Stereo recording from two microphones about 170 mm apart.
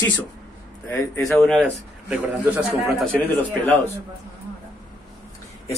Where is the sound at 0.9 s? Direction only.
15° left (ahead or behind).